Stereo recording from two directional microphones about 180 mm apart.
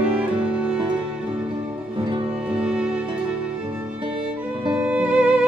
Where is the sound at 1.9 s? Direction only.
25° right (ahead or behind).